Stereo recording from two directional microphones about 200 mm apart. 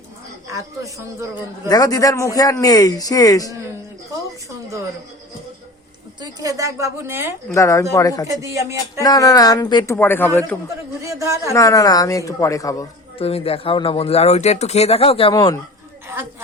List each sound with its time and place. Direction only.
0.4 s a woman's voice: 15° right (ahead or behind)
1.6 s speech: 20° left (ahead or behind)
6.1 s a woman's voice: 20° right (ahead or behind)
7.5 s speech: 15° left (ahead or behind)
8.3 s a woman's voice: 15° right (ahead or behind)
9.0 s speech: 15° left (ahead or behind)
11.0 s a woman's voice: 15° right (ahead or behind)
11.5 s speech: 15° left (ahead or behind)
13.2 s speech: 30° left (ahead or behind)